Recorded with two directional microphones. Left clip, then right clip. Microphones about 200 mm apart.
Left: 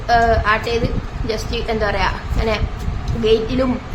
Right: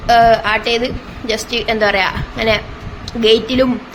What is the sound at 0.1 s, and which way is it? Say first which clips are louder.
A woman's voice: right 4 dB; 20° right (ahead or behind).